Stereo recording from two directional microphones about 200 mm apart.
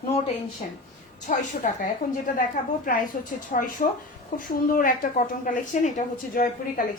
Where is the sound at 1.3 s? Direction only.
40° left (ahead or behind).